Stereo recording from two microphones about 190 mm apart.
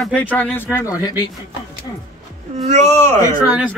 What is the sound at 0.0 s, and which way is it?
Speech, 10° left (ahead or behind).